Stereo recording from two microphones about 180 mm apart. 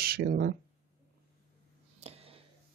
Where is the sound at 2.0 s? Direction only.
35° right (ahead or behind).